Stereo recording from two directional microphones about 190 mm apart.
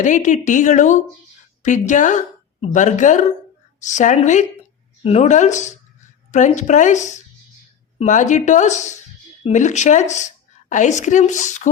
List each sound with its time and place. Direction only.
0.0 s a woman's voice: 40° left (ahead or behind)